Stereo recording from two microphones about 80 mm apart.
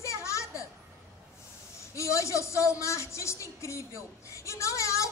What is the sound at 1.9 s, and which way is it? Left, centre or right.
Speech, left.